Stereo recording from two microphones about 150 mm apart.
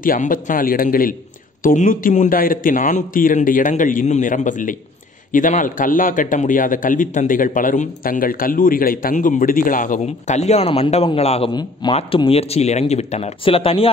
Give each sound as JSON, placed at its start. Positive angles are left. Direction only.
{"t": 0.0, "sound": "a man's voice", "side_deg": 65}